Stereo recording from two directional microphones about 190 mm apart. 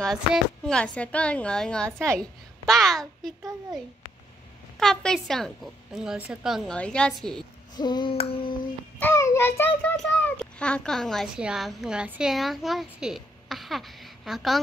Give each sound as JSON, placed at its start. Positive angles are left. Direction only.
{"t": 0.0, "sound": "a woman's voice", "side_deg": 0}
{"t": 4.7, "sound": "a woman's voice", "side_deg": 0}
{"t": 7.7, "sound": "child singing", "side_deg": 20}
{"t": 9.0, "sound": "a child's voice", "side_deg": 15}